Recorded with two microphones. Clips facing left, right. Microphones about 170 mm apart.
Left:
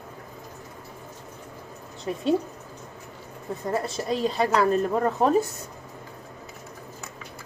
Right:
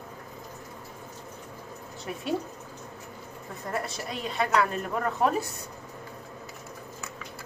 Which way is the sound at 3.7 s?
25° left (ahead or behind).